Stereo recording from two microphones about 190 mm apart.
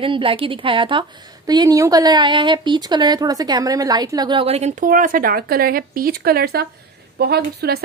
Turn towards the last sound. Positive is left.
turn(degrees=-55)  # may be behind; listen again after turning